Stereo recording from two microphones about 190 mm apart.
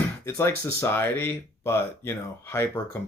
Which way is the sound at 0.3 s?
15° left (ahead or behind).